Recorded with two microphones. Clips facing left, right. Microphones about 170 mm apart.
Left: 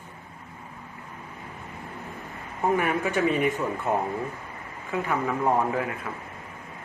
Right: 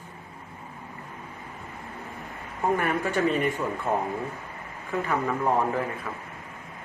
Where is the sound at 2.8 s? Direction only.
10° left (ahead or behind).